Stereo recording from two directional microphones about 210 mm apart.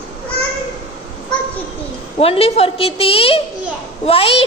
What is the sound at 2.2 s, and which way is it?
A woman's voice, 30° left (ahead or behind).